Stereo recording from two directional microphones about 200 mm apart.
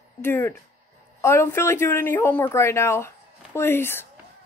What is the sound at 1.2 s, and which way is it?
Speech, 15° left (ahead or behind).